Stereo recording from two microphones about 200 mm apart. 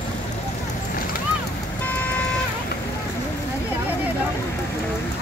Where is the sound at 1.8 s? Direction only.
10° left (ahead or behind).